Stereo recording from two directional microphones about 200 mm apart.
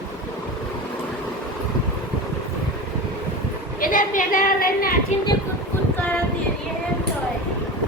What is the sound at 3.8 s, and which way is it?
A woman's voice, 45° left (ahead or behind).